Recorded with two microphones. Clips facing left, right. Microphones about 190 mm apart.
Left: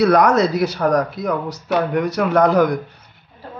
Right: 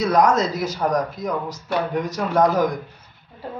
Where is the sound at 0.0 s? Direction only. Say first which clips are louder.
Left 4 dB; 65° left (ahead or behind).